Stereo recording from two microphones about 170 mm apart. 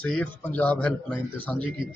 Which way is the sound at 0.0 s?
10° left (ahead or behind).